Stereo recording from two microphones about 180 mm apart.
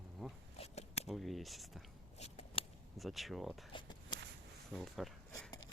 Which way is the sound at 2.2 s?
35° left (ahead or behind).